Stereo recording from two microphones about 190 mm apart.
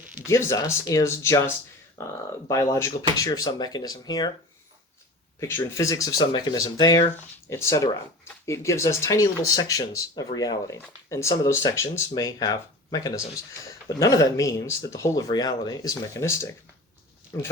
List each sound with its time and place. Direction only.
0.3 s speech: 15° left (ahead or behind)
5.4 s speech: 15° left (ahead or behind)